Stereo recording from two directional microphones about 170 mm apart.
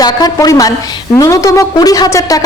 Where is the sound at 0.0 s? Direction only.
25° left (ahead or behind).